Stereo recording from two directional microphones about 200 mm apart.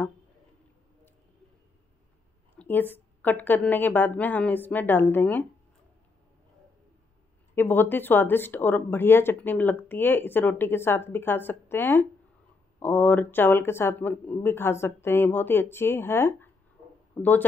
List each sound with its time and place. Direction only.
2.6 s speech: 10° left (ahead or behind)
7.5 s speech: 10° left (ahead or behind)